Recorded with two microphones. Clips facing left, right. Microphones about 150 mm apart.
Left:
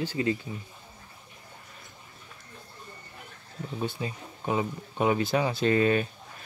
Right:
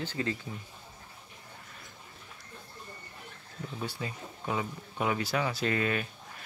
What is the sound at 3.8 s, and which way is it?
Speech, 25° left (ahead or behind).